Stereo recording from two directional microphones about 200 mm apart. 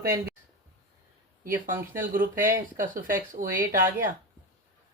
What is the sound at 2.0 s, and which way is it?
Speech, 45° right (ahead or behind).